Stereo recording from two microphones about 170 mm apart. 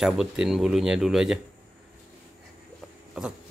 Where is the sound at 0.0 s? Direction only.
Centre (ahead or behind).